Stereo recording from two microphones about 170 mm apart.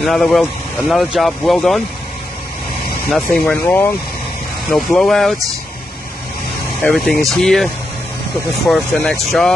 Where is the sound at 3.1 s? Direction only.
5° left (ahead or behind).